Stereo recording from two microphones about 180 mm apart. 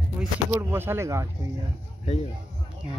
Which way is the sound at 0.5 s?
15° right (ahead or behind).